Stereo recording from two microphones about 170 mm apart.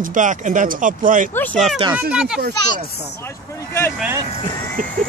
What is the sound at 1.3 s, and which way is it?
Speech, 10° left (ahead or behind).